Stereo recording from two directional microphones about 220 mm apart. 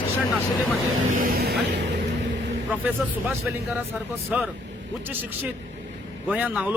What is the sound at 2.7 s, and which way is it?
A man's voice, 10° right (ahead or behind).